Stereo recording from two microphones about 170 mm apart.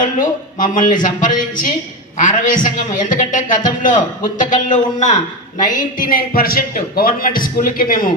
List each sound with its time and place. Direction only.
0.0 s a man's voice: 50° left (ahead or behind)